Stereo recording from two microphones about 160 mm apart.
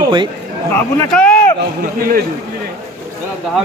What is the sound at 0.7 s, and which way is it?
Speech, 10° left (ahead or behind).